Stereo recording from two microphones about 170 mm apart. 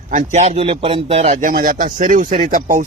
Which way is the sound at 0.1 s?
45° right (ahead or behind).